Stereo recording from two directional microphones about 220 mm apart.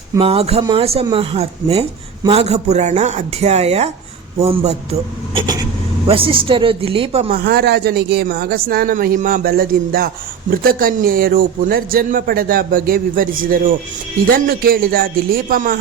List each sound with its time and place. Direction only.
0.2 s speech: 25° right (ahead or behind)